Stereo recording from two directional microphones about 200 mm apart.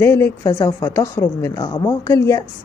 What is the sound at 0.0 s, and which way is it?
Speech, 10° left (ahead or behind).